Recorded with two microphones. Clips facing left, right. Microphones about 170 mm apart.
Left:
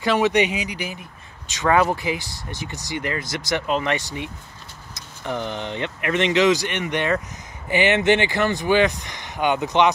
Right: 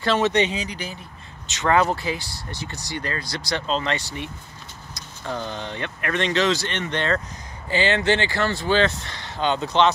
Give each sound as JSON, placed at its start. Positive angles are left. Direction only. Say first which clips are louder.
{"t": 0.0, "sound": "speech", "louder": "left 1 dB", "side_deg": 15}